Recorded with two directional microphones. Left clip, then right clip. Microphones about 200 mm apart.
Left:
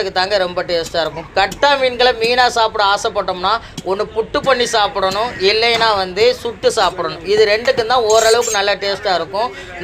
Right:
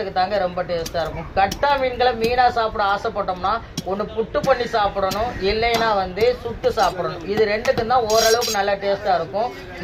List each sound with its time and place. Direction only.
0.0 s a man's voice: 65° left (ahead or behind)